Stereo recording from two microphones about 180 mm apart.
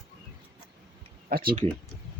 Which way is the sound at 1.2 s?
55° right (ahead or behind).